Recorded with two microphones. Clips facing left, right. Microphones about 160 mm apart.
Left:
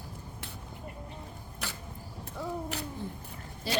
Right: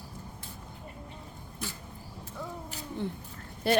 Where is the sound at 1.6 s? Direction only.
75° left (ahead or behind).